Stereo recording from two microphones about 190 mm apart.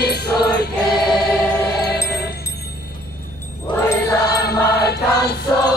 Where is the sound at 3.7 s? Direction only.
15° left (ahead or behind).